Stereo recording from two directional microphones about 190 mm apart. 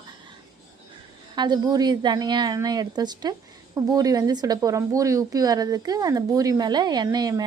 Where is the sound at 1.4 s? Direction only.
20° right (ahead or behind).